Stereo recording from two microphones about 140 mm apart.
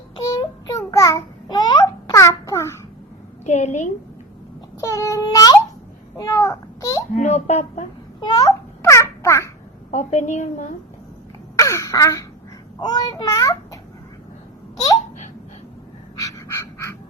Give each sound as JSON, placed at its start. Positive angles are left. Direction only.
{"t": 0.3, "sound": "a sound", "side_deg": 20}
{"t": 3.4, "sound": "a woman's voice", "side_deg": 60}
{"t": 4.8, "sound": "a child's voice", "side_deg": 25}
{"t": 6.1, "sound": "a sound", "side_deg": 25}
{"t": 7.2, "sound": "speech", "side_deg": 50}
{"t": 8.2, "sound": "babbling", "side_deg": 25}
{"t": 9.9, "sound": "a woman's voice", "side_deg": 55}
{"t": 11.5, "sound": "throat clearing", "side_deg": 25}
{"t": 12.8, "sound": "a child's voice", "side_deg": 30}
{"t": 16.1, "sound": "a sound", "side_deg": 20}